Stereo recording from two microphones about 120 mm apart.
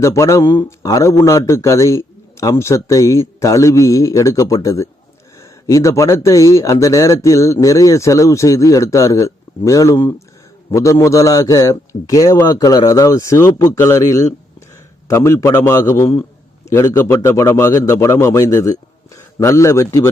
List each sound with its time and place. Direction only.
0.0 s speech: 25° left (ahead or behind)